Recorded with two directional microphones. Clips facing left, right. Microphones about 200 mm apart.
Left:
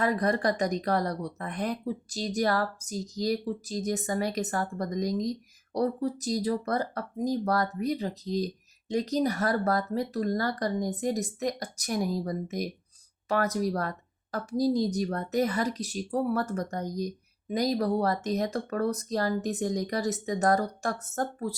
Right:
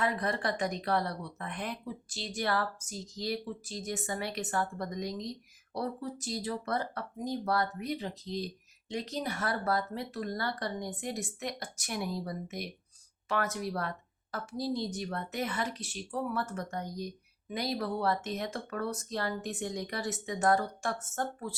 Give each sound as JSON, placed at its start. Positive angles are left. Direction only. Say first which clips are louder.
{"t": 0.0, "sound": "speech", "louder": "left 6 dB", "side_deg": 40}